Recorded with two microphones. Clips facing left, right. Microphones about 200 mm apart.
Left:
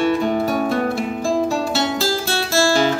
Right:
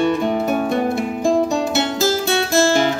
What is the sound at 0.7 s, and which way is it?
Music, 20° right (ahead or behind).